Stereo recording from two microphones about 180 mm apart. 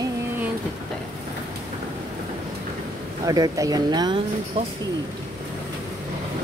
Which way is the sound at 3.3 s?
20° right (ahead or behind).